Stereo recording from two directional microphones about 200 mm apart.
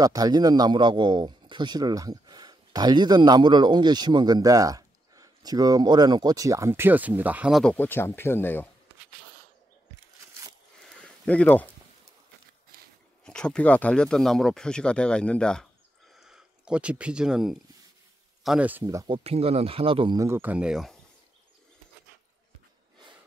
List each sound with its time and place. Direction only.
0.0 s a man's voice: 20° right (ahead or behind); by 7.7 s 5° right (ahead or behind)
7.7 s speech: 10° left (ahead or behind)
11.2 s speech: 5° left (ahead or behind)
13.2 s speech: 5° left (ahead or behind)